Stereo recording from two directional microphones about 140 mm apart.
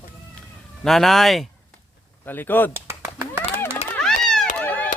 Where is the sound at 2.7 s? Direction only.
15° right (ahead or behind).